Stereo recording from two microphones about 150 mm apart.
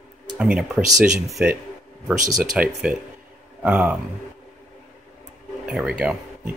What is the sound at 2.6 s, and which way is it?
Speech, 5° right (ahead or behind).